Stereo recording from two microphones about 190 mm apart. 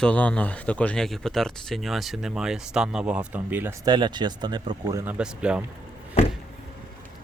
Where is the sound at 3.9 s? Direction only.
25° right (ahead or behind); by 5.7 s 5° right (ahead or behind).